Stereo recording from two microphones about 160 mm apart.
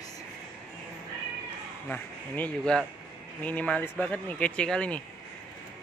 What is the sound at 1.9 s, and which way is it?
Speech, 10° left (ahead or behind).